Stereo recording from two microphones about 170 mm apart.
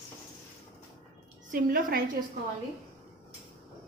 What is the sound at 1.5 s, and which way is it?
Speech, 55° right (ahead or behind).